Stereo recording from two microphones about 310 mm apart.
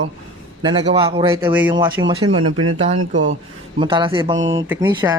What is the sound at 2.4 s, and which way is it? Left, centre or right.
Speech, right.